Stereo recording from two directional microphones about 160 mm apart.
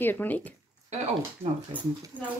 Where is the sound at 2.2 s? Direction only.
10° right (ahead or behind).